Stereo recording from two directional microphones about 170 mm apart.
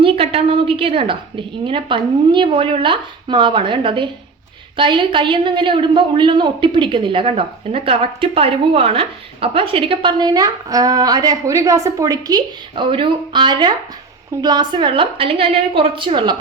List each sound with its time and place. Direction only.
0.0 s a woman's voice: 35° right (ahead or behind)